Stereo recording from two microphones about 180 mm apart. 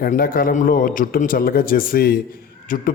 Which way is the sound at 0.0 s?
55° left (ahead or behind).